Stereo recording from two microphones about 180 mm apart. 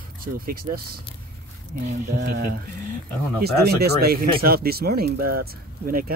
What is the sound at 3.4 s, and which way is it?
Speech, 60° right (ahead or behind).